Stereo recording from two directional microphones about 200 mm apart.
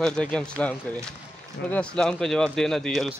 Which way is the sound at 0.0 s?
5° left (ahead or behind).